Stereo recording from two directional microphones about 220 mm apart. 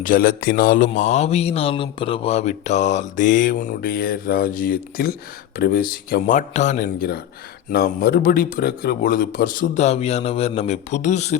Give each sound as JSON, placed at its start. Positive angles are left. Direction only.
{"t": 0.0, "sound": "speech", "side_deg": 40}
{"t": 6.8, "sound": "speech", "side_deg": 45}